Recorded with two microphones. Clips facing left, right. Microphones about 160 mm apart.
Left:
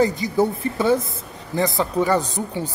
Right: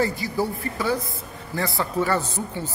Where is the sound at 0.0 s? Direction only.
20° left (ahead or behind).